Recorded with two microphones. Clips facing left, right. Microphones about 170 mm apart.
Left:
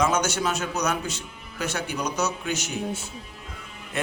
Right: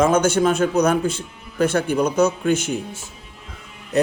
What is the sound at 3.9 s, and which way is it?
Speech, 40° right (ahead or behind).